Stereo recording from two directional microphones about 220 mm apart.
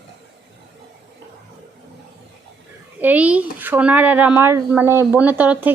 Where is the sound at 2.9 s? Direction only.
5° right (ahead or behind).